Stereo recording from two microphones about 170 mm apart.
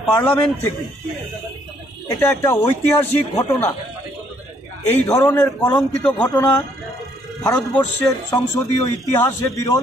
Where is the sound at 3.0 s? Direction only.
10° left (ahead or behind).